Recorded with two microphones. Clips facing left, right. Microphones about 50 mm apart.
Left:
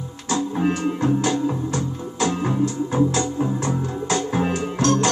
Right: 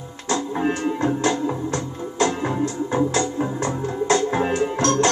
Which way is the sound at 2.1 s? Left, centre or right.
Right.